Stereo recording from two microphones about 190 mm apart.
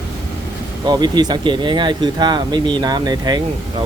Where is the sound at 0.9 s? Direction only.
20° right (ahead or behind).